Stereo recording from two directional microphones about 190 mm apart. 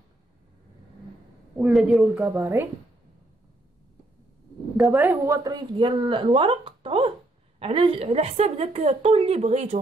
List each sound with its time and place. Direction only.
1.6 s speech: centre (ahead or behind)
2.2 s a woman's voice: 15° right (ahead or behind)
4.7 s speech: centre (ahead or behind)
5.2 s a woman's voice: 20° right (ahead or behind); by 9.8 s 35° right (ahead or behind)